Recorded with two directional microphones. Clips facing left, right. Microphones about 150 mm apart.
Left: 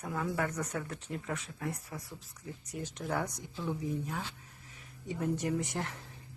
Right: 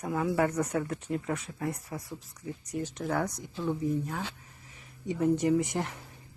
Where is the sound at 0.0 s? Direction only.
45° right (ahead or behind).